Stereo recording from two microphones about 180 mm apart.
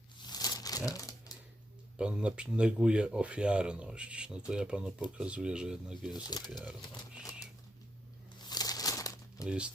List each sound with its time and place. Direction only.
0.3 s crumpling: 20° left (ahead or behind)
2.0 s speech: 5° right (ahead or behind)
6.1 s speech: 25° left (ahead or behind)
8.4 s crumpling: 20° left (ahead or behind)
9.5 s speech: 5° right (ahead or behind)